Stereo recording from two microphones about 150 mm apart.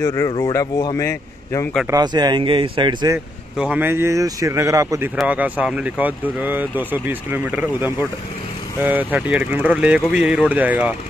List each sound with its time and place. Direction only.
0.0 s a man's voice: 25° left (ahead or behind)
1.9 s speech: 25° right (ahead or behind)
3.5 s speech: 10° right (ahead or behind)
5.1 s speech: 5° right (ahead or behind)